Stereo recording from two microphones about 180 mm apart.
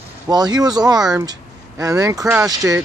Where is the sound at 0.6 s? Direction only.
20° right (ahead or behind).